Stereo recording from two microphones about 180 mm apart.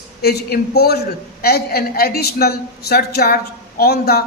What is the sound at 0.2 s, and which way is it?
A man's voice, 60° left (ahead or behind).